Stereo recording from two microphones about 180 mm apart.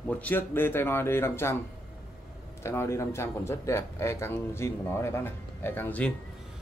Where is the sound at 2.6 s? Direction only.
15° left (ahead or behind).